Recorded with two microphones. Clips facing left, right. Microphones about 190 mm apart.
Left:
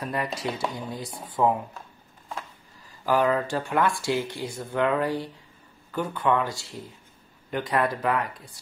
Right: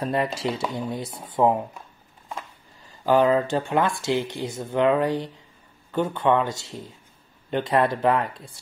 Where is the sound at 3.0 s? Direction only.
25° right (ahead or behind).